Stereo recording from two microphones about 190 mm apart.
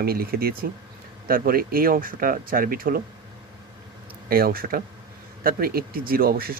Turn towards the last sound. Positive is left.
turn(degrees=-50)  # may be behind; listen again after turning